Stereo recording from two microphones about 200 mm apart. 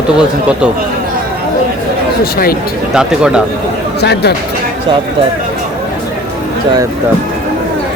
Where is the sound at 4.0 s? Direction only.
55° left (ahead or behind).